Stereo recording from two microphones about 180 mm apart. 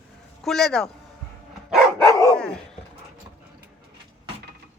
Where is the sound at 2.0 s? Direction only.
20° left (ahead or behind).